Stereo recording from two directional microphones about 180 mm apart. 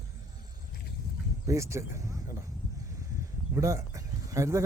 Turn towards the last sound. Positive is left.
turn(degrees=-20)  # may be behind; listen again after turning